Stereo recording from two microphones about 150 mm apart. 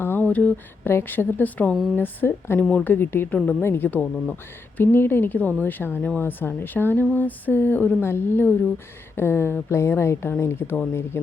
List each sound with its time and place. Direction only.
0.0 s speech: 15° left (ahead or behind)